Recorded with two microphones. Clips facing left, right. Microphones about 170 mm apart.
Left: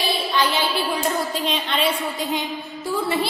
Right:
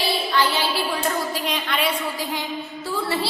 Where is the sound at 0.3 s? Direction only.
20° left (ahead or behind).